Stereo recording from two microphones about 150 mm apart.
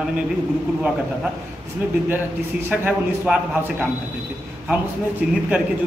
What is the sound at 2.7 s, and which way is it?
Speech, 10° right (ahead or behind).